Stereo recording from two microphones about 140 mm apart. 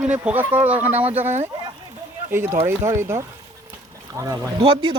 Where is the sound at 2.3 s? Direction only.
15° right (ahead or behind).